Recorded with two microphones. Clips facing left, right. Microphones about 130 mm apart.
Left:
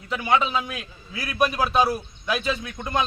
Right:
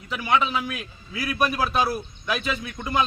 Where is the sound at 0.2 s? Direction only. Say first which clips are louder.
Left 1 dB; 20° left (ahead or behind).